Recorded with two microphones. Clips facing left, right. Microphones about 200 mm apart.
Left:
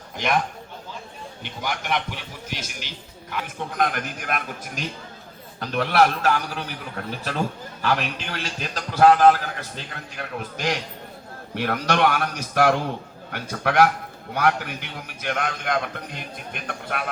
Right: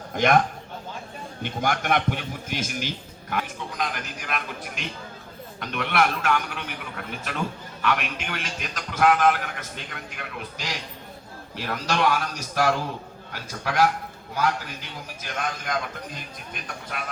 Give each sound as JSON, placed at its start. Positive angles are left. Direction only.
{"t": 1.4, "sound": "a man's voice", "side_deg": -50}
{"t": 3.4, "sound": "a man's voice", "side_deg": 55}
{"t": 11.5, "sound": "a man's voice", "side_deg": 65}